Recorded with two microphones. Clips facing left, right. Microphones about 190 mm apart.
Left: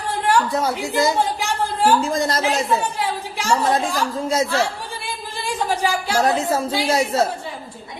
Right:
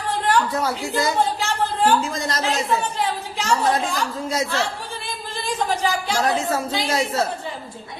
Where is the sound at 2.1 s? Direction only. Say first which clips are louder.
Left 5 dB; 35° left (ahead or behind).